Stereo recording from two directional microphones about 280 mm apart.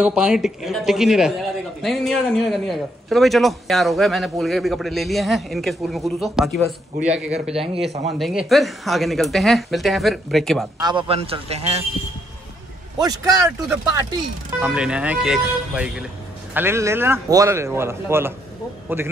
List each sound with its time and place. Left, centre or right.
0.0 s a man's voice: centre
10.8 s a man's voice: centre
13.0 s a man's voice: centre